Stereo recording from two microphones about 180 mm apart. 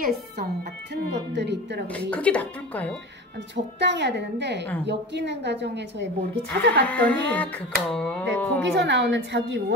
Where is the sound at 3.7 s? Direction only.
75° right (ahead or behind).